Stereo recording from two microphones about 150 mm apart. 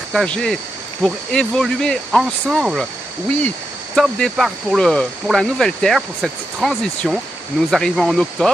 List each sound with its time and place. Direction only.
0.1 s speech: 5° left (ahead or behind)